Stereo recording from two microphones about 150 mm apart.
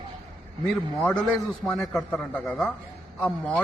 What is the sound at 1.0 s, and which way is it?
A man's voice, 5° left (ahead or behind).